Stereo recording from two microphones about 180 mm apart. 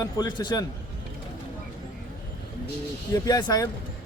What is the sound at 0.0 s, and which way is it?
Speech, 20° left (ahead or behind).